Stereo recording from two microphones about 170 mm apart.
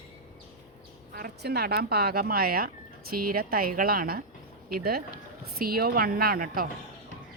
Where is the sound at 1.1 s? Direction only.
65° right (ahead or behind).